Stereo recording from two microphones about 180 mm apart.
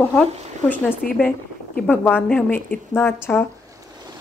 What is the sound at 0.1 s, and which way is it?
A woman's voice, 5° left (ahead or behind).